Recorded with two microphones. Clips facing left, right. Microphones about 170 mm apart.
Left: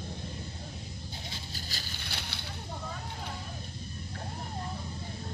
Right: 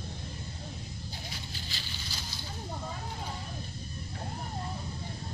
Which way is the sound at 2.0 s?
65° left (ahead or behind).